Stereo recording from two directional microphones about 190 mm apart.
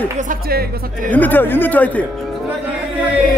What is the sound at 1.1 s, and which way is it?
Speech, 10° left (ahead or behind).